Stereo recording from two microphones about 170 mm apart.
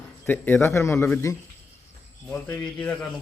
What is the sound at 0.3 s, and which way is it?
A man's voice, 10° left (ahead or behind).